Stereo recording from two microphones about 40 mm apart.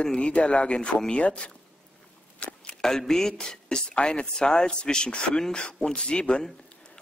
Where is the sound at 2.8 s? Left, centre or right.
Centre.